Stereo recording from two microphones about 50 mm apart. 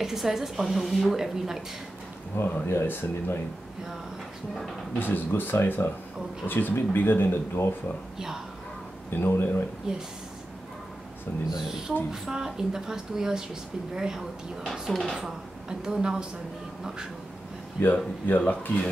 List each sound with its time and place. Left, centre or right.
0.0 s a woman's voice: centre
2.3 s speech: left
4.9 s speech: left
9.1 s speech: left
9.9 s a woman's voice: centre
12.1 s a woman's voice: centre
14.7 s speech: centre
15.7 s a woman's voice: centre
18.2 s speech: left